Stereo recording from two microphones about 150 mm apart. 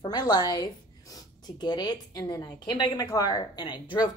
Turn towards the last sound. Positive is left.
turn(degrees=30)  # may be behind; listen again after turning